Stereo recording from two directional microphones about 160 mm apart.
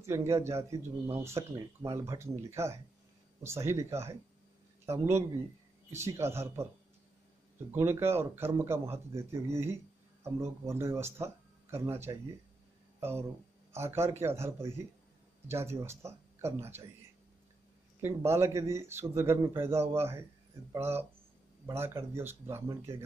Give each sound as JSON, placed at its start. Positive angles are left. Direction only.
{"t": 0.0, "sound": "speech", "side_deg": -15}
{"t": 7.7, "sound": "speech", "side_deg": -15}
{"t": 13.7, "sound": "speech", "side_deg": -15}
{"t": 18.0, "sound": "speech", "side_deg": -15}